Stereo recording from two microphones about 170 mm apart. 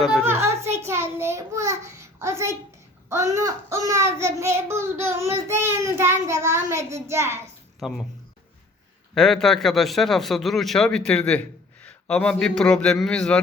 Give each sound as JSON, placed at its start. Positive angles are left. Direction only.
{"t": 0.0, "sound": "a man's voice", "side_deg": 0}
{"t": 0.4, "sound": "child singing", "side_deg": -15}
{"t": 7.8, "sound": "speech", "side_deg": 0}
{"t": 9.1, "sound": "a man's voice", "side_deg": 0}